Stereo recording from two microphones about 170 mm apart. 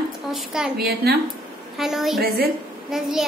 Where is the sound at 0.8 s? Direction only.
65° right (ahead or behind).